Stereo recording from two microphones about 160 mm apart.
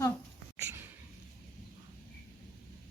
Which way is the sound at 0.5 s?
15° right (ahead or behind).